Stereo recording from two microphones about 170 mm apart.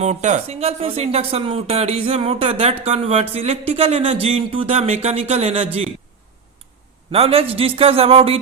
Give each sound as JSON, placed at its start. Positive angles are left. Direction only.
{"t": 0.0, "sound": "speech", "side_deg": -45}
{"t": 7.1, "sound": "speech", "side_deg": -35}